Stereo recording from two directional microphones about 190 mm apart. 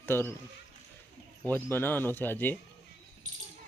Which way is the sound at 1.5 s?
10° left (ahead or behind).